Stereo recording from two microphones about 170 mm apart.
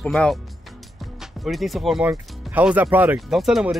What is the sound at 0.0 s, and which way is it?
Speech, 5° left (ahead or behind).